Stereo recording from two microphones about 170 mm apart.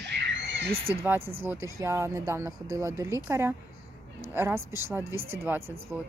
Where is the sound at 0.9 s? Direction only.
15° right (ahead or behind).